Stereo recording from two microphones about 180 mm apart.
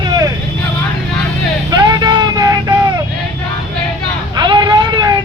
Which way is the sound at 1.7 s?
20° right (ahead or behind).